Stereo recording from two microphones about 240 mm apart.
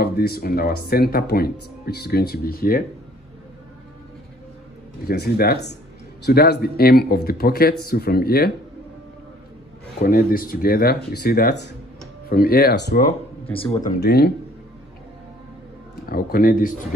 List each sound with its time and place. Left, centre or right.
0.0 s speech: left
5.0 s speech: left
10.0 s speech: left
13.5 s speech: left
13.8 s speech: left
16.1 s speech: left